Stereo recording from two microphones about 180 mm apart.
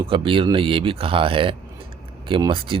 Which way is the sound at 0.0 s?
30° right (ahead or behind).